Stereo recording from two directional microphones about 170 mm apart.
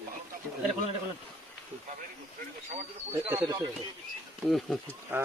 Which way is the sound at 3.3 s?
15° right (ahead or behind).